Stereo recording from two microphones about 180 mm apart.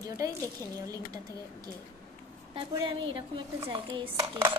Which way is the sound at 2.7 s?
25° right (ahead or behind).